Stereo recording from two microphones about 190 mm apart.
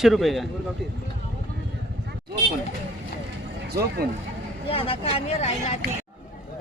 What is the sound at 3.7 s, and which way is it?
Speech, 55° right (ahead or behind).